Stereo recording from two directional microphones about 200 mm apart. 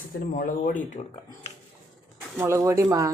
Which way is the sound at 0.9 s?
30° left (ahead or behind).